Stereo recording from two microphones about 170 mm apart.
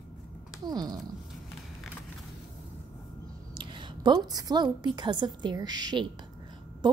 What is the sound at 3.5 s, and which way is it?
A woman's voice, 30° right (ahead or behind).